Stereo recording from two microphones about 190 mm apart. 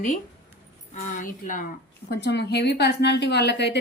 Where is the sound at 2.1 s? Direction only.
65° left (ahead or behind).